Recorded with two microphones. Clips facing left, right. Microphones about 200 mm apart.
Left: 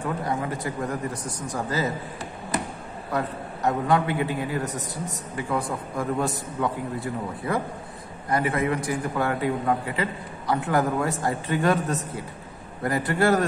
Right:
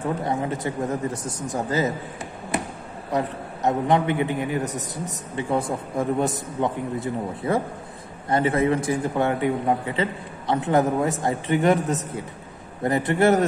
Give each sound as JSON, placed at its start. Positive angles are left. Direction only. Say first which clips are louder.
{"t": 0.2, "sound": "a man's voice", "louder": "right 2 dB", "side_deg": -25}
{"t": 3.1, "sound": "a man's voice", "louder": "right 3 dB", "side_deg": -20}